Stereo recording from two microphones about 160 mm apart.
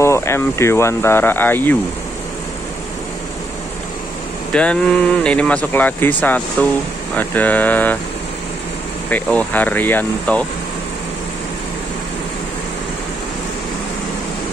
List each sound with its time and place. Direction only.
0.0 s speech: 15° left (ahead or behind)
4.5 s speech: 5° left (ahead or behind)
9.1 s speech: 10° left (ahead or behind)